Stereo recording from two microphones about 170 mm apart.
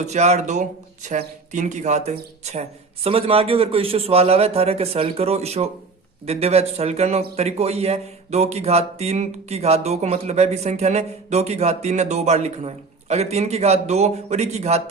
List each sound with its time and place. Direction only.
0.0 s speech: 40° right (ahead or behind)